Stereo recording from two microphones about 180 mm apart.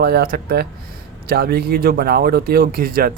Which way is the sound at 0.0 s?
60° right (ahead or behind).